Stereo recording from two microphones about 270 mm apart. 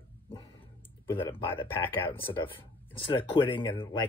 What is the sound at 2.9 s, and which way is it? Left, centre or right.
Speech, centre.